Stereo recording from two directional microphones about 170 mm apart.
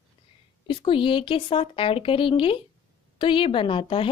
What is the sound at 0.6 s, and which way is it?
Speech, 30° left (ahead or behind).